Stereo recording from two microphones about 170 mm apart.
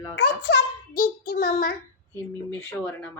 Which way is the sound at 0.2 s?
75° left (ahead or behind).